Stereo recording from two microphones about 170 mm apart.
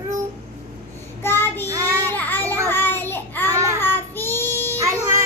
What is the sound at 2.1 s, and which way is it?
Child singing, 10° left (ahead or behind).